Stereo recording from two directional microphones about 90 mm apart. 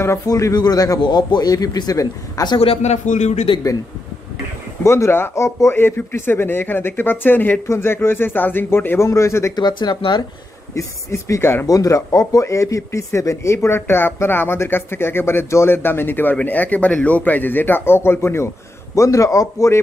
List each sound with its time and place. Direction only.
0.3 s a man's voice: 45° left (ahead or behind)
1.0 s a man's voice: 55° left (ahead or behind)
3.5 s a man's voice: 90° left
4.8 s speech: 30° left (ahead or behind)
9.6 s speech: 50° left (ahead or behind)
10.7 s speech: 35° left (ahead or behind)
11.6 s speech: 40° left (ahead or behind)